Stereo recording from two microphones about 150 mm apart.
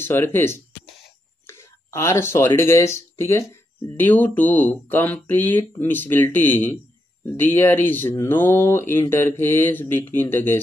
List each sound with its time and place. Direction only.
0.0 s speech: 15° left (ahead or behind)